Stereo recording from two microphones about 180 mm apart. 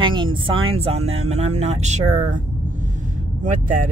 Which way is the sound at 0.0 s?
25° right (ahead or behind).